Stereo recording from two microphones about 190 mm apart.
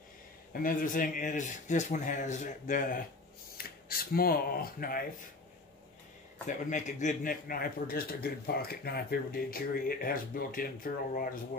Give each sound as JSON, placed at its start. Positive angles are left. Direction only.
{"t": 0.5, "sound": "speech", "side_deg": 45}
{"t": 6.4, "sound": "speech", "side_deg": 40}